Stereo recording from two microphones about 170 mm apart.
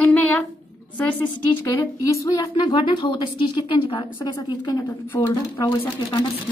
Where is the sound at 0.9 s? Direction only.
10° left (ahead or behind).